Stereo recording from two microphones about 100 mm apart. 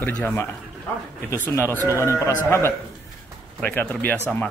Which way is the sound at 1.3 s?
25° left (ahead or behind).